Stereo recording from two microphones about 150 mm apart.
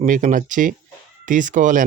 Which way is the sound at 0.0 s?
60° right (ahead or behind).